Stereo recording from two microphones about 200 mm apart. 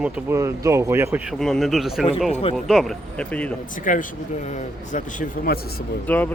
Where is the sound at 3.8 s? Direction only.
40° left (ahead or behind).